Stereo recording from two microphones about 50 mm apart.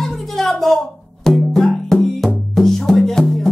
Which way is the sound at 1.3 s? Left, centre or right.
Centre.